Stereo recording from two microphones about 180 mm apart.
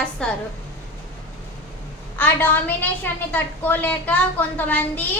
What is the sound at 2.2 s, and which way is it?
A woman's voice, 10° left (ahead or behind).